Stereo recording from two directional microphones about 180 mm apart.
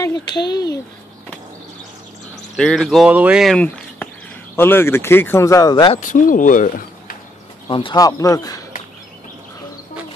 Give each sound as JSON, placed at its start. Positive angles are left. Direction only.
{"t": 0.0, "sound": "speech", "side_deg": 20}
{"t": 2.5, "sound": "speech", "side_deg": 0}
{"t": 4.6, "sound": "speech", "side_deg": 10}
{"t": 5.9, "sound": "speech", "side_deg": 45}
{"t": 7.6, "sound": "speech", "side_deg": 25}